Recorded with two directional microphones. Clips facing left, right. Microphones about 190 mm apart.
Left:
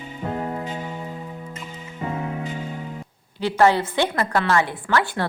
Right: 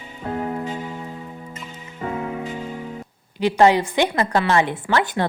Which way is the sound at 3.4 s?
15° right (ahead or behind).